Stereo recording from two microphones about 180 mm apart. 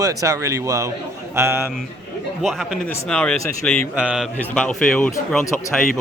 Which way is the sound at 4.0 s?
5° right (ahead or behind).